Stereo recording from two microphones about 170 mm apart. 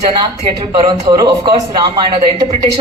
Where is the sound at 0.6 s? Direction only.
30° right (ahead or behind).